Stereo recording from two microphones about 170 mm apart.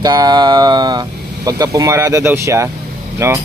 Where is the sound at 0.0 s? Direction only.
25° right (ahead or behind).